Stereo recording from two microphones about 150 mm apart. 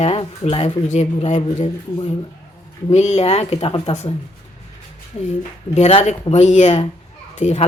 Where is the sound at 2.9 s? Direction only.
50° left (ahead or behind).